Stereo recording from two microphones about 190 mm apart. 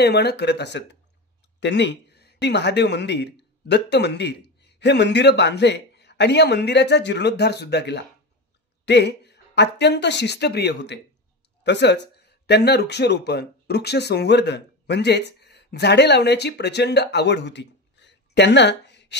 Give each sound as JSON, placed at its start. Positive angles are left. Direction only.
{"t": 0.0, "sound": "speech", "side_deg": 60}